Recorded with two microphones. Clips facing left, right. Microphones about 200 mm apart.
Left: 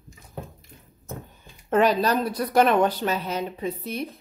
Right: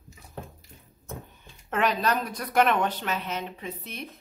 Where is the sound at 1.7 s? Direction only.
35° left (ahead or behind).